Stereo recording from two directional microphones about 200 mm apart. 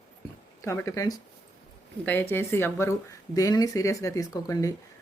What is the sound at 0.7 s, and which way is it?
Speech, 15° left (ahead or behind).